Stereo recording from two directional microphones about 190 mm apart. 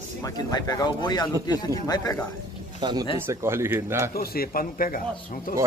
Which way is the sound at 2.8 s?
20° right (ahead or behind).